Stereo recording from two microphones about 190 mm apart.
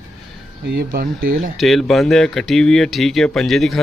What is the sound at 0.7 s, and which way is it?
Speech, 50° right (ahead or behind).